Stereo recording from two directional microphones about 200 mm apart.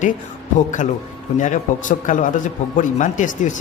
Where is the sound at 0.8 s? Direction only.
40° left (ahead or behind).